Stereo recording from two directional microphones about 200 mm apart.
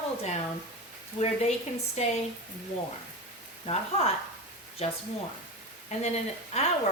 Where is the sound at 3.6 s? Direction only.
30° left (ahead or behind).